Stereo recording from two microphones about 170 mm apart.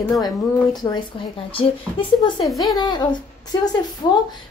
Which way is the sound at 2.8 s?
25° left (ahead or behind).